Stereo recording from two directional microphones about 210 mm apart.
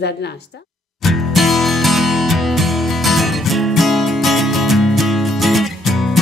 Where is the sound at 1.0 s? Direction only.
Centre (ahead or behind).